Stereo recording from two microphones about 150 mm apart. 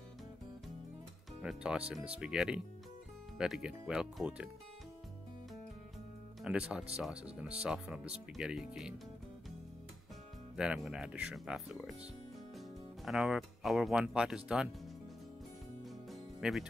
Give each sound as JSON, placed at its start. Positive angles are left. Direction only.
{"t": 1.4, "sound": "speech", "side_deg": -5}
{"t": 6.4, "sound": "speech", "side_deg": -5}
{"t": 10.5, "sound": "speech", "side_deg": -5}
{"t": 15.8, "sound": "music", "side_deg": 0}